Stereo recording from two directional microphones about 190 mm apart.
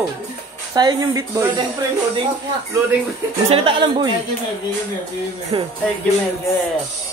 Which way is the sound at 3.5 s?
30° right (ahead or behind).